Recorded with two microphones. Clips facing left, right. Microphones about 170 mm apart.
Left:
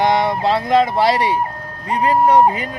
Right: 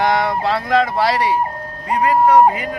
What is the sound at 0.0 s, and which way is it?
Speech, 20° left (ahead or behind).